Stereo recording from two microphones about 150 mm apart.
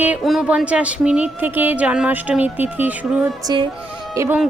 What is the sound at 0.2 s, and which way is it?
Speech, centre (ahead or behind).